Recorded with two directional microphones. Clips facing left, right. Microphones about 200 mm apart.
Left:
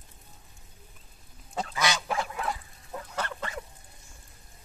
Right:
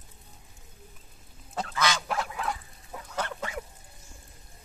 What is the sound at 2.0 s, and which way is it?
Goose, centre (ahead or behind).